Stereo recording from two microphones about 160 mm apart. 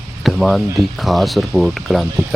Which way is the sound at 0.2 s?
Centre (ahead or behind).